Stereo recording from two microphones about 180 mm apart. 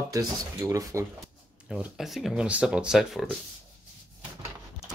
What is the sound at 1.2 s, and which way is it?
Speech, 5° right (ahead or behind).